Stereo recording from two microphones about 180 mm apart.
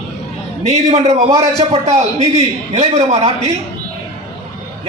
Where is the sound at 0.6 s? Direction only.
35° right (ahead or behind).